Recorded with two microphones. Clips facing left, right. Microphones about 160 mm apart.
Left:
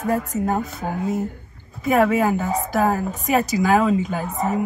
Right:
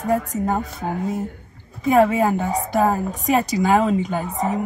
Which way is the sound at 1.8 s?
Centre (ahead or behind).